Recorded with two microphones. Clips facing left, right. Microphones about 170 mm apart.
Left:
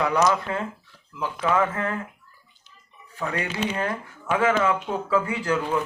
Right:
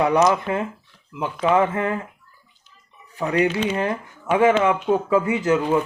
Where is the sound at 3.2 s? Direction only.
15° right (ahead or behind).